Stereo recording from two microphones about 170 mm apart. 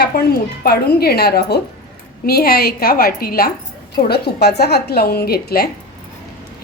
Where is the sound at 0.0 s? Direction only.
65° left (ahead or behind).